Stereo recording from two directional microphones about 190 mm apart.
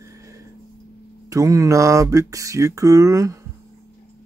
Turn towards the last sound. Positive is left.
turn(degrees=-15)  # may be behind; listen again after turning